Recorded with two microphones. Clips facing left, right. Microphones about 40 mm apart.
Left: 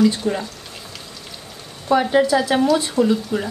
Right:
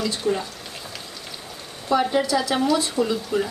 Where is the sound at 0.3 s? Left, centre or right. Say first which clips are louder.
Left 1 dB; centre.